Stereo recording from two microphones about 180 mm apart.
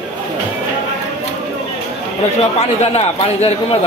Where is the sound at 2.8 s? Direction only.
35° left (ahead or behind).